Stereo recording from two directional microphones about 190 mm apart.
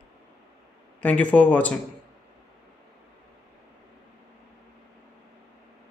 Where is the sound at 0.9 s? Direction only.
5° left (ahead or behind).